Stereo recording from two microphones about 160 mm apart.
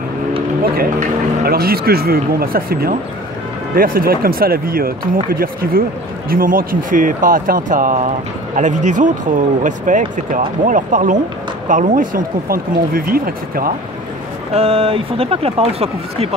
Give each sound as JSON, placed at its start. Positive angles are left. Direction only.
{"t": 0.7, "sound": "speech", "side_deg": -70}
{"t": 14.5, "sound": "speech", "side_deg": -40}